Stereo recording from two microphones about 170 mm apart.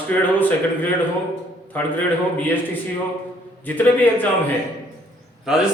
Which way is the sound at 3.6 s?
10° left (ahead or behind).